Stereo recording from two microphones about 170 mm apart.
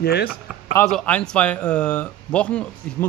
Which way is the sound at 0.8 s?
5° left (ahead or behind).